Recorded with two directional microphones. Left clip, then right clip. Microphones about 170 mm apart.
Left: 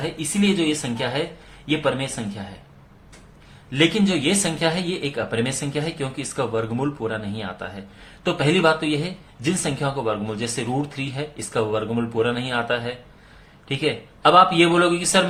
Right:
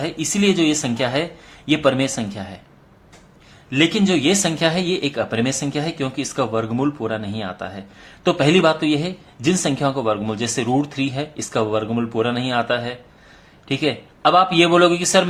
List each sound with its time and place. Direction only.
0.0 s speech: 35° right (ahead or behind)
3.7 s speech: 30° right (ahead or behind)